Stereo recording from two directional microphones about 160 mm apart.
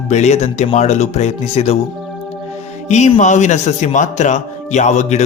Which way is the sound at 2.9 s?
45° left (ahead or behind).